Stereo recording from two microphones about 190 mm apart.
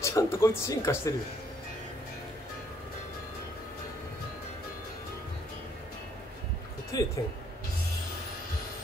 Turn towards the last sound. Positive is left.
turn(degrees=20)  # may be behind; listen again after turning